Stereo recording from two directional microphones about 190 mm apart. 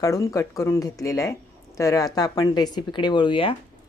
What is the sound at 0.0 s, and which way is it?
Speech, 15° left (ahead or behind).